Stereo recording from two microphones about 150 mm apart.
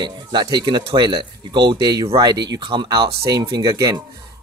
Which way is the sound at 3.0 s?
90° right.